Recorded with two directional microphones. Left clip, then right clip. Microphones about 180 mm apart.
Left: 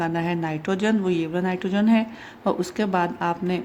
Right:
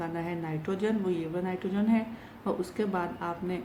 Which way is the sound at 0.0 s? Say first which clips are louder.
Left 9 dB; 50° left (ahead or behind).